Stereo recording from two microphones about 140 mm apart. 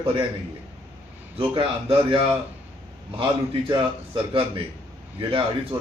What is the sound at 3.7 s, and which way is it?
Speech, 40° right (ahead or behind).